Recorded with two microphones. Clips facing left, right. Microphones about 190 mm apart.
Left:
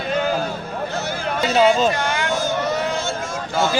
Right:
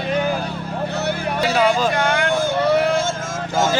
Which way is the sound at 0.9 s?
60° right (ahead or behind).